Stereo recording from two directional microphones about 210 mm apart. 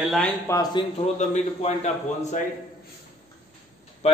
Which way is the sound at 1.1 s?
35° left (ahead or behind).